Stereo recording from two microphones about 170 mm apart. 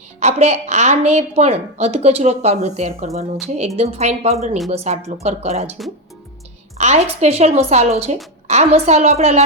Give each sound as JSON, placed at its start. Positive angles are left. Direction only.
{"t": 0.2, "sound": "a woman's voice", "side_deg": -40}
{"t": 6.7, "sound": "a woman's voice", "side_deg": -40}